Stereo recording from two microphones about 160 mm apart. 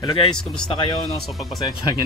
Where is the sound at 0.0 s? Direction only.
30° left (ahead or behind).